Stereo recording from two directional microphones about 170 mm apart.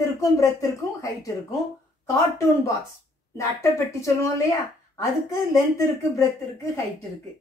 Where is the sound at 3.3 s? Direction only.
15° left (ahead or behind).